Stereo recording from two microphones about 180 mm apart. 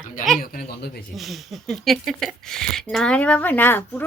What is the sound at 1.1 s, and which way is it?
Speech, centre (ahead or behind).